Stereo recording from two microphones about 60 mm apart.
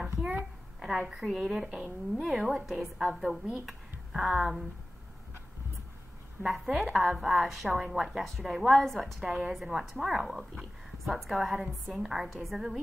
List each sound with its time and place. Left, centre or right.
0.0 s a sound: right
0.7 s a woman's voice: centre
3.2 s a woman's voice: centre
6.4 s a woman's voice: centre